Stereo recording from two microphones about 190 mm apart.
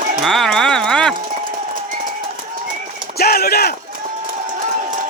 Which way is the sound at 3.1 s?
55° left (ahead or behind).